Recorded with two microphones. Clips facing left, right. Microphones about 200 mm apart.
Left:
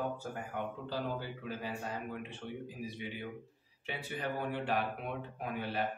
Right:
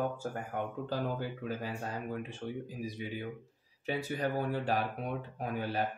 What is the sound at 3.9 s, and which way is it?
Speech, 40° right (ahead or behind).